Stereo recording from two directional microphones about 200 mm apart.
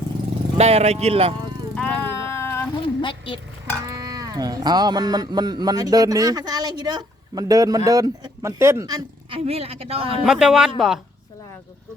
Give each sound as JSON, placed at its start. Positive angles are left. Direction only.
{"t": 0.5, "sound": "speech", "side_deg": -30}
{"t": 1.7, "sound": "a sound", "side_deg": 10}
{"t": 2.7, "sound": "a sound", "side_deg": 25}
{"t": 3.8, "sound": "a woman's voice", "side_deg": -20}
{"t": 9.4, "sound": "speech", "side_deg": -30}
{"t": 10.2, "sound": "speech", "side_deg": -5}